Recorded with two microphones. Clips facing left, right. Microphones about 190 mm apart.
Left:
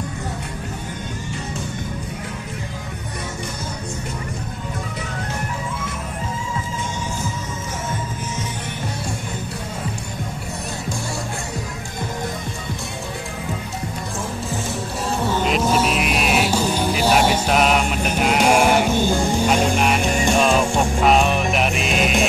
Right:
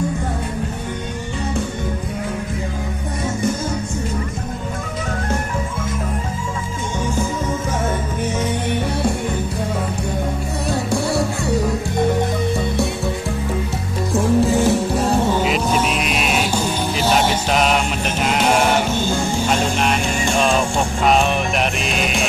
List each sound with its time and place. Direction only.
10.7 s music: 65° right (ahead or behind)
14.1 s music: 70° right (ahead or behind)
15.4 s music: centre (ahead or behind)